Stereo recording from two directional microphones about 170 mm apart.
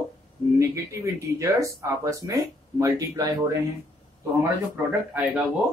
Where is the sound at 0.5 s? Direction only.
20° right (ahead or behind).